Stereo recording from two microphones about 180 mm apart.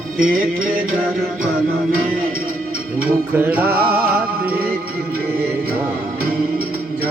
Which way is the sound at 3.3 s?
10° right (ahead or behind).